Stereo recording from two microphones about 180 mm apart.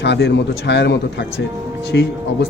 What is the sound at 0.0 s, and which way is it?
A man's voice, 75° left (ahead or behind).